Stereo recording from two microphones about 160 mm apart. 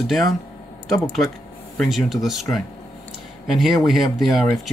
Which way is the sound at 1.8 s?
Centre (ahead or behind).